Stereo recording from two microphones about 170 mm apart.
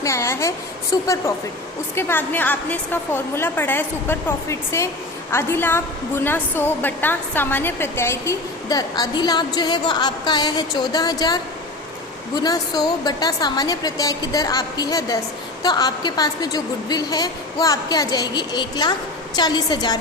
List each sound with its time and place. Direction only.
0.0 s a woman's voice: 15° left (ahead or behind)
12.4 s a woman's voice: 25° left (ahead or behind)